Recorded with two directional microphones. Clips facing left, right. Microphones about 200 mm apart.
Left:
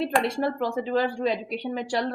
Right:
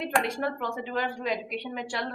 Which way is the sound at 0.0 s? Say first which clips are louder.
Left 4 dB; 35° left (ahead or behind).